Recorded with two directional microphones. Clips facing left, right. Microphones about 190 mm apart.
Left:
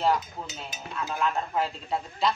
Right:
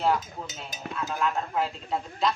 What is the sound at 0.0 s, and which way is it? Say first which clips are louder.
A woman's voice: even; centre (ahead or behind).